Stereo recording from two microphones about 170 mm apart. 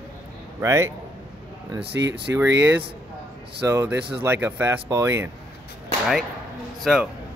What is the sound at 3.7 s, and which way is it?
Speech, 15° right (ahead or behind).